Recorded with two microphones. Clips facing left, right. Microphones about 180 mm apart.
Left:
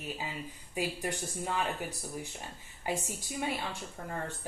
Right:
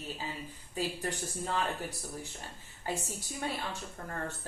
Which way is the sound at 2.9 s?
15° left (ahead or behind).